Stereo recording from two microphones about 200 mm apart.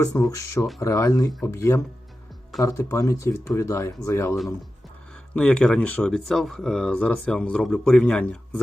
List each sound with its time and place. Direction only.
0.0 s speech: 15° left (ahead or behind)